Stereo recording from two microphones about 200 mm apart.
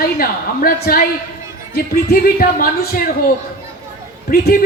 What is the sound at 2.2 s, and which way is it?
Speech, 45° left (ahead or behind).